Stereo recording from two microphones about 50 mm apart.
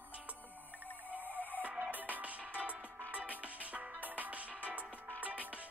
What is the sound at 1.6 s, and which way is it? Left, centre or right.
Music, right.